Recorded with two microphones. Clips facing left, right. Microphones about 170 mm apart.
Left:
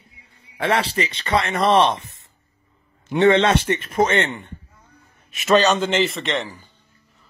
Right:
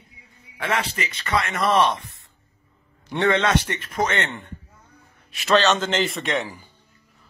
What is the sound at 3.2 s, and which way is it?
Speech, 25° left (ahead or behind).